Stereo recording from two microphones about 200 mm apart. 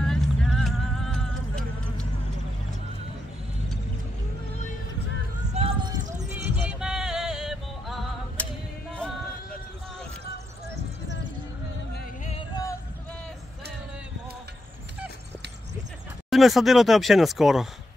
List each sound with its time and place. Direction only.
0.0 s music: centre (ahead or behind)
5.5 s a sound: 30° right (ahead or behind)
6.5 s music: 5° right (ahead or behind)
16.3 s speech: centre (ahead or behind)